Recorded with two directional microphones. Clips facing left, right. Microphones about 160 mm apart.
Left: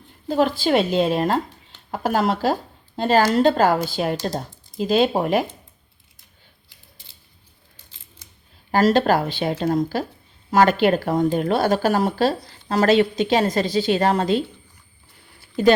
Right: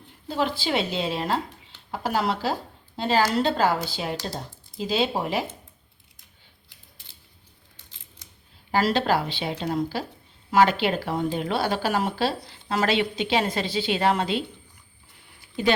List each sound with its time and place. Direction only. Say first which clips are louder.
0.3 s speech: left 7 dB; 50° left (ahead or behind)
8.7 s speech: left 5 dB; 45° left (ahead or behind)
15.6 s speech: left 7 dB; 40° left (ahead or behind)